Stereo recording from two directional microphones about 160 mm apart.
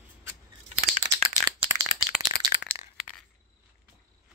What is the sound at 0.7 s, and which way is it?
Rattle, 35° right (ahead or behind).